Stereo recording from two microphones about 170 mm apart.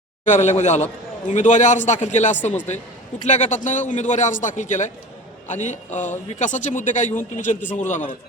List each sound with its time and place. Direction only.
0.3 s a man's voice: 45° left (ahead or behind)